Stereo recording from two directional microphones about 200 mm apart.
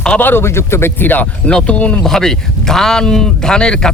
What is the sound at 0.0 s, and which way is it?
Speech, 5° left (ahead or behind).